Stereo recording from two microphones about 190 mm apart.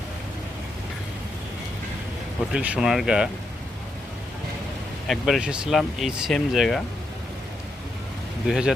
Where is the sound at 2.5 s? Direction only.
5° right (ahead or behind).